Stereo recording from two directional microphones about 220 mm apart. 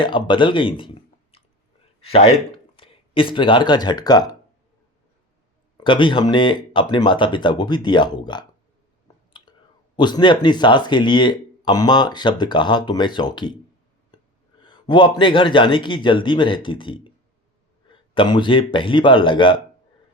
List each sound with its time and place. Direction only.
0.0 s a man's voice: 20° left (ahead or behind)
5.7 s speech: 20° left (ahead or behind)
14.6 s speech: 20° left (ahead or behind)